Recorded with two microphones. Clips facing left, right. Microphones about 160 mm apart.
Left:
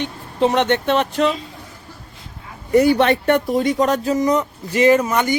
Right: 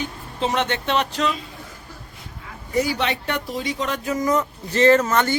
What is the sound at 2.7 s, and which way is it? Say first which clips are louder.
Speech: left 9 dB; 55° left (ahead or behind).